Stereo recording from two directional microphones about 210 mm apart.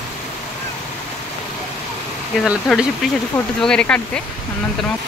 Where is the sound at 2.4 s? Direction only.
Centre (ahead or behind).